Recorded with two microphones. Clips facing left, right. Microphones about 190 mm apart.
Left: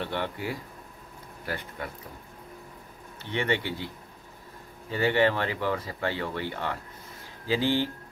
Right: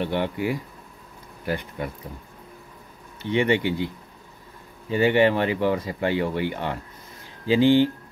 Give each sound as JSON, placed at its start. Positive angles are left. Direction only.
{"t": 0.0, "sound": "speech", "side_deg": -15}
{"t": 3.2, "sound": "speech", "side_deg": -15}